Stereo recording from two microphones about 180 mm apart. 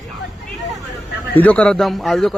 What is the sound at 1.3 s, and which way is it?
A man's voice, 10° left (ahead or behind).